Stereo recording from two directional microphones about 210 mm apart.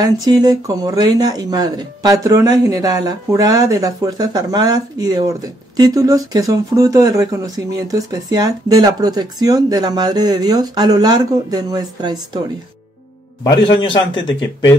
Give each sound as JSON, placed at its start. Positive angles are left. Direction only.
{"t": 0.0, "sound": "speech", "side_deg": -20}
{"t": 13.4, "sound": "a man's voice", "side_deg": 20}